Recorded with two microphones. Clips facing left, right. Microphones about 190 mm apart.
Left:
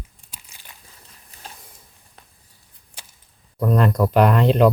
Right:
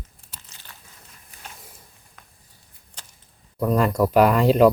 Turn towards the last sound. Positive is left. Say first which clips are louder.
# even
turn(degrees=-5)  # may be behind; listen again after turning